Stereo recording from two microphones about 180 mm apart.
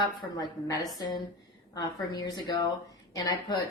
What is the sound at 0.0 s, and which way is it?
Speech, 25° left (ahead or behind).